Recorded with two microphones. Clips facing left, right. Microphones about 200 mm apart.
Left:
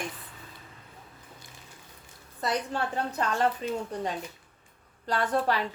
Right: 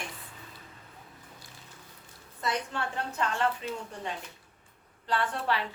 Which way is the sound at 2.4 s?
40° left (ahead or behind).